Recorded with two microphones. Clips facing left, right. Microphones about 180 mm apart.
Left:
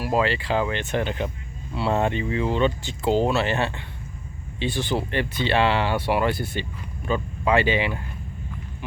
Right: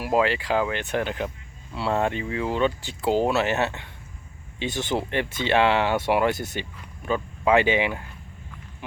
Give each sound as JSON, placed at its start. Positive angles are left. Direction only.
{"t": 0.0, "sound": "speech", "side_deg": -15}